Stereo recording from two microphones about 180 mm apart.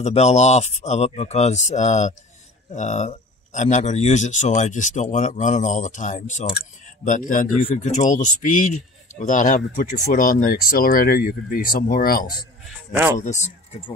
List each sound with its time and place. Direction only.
0.0 s speech: 35° left (ahead or behind); by 12.3 s 55° left (ahead or behind)
12.9 s speech: 10° right (ahead or behind)
13.2 s speech: 40° left (ahead or behind)